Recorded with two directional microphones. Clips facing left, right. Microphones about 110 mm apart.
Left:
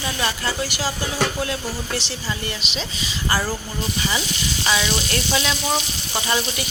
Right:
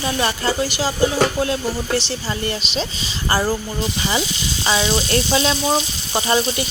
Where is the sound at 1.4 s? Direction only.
30° right (ahead or behind).